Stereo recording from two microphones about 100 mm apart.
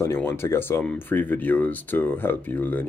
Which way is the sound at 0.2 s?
25° left (ahead or behind).